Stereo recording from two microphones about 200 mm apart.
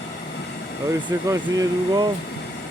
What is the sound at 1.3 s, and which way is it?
Speech, 15° right (ahead or behind).